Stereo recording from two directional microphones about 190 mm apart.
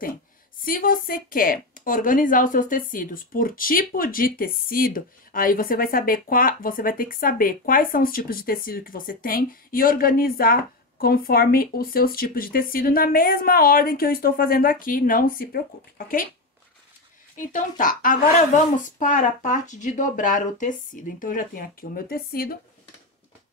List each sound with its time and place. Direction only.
0.7 s a woman's voice: 50° left (ahead or behind)
17.4 s a woman's voice: 45° left (ahead or behind)